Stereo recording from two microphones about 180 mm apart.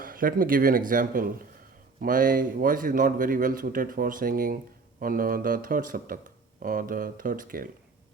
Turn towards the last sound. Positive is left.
turn(degrees=-50)  # may be behind; listen again after turning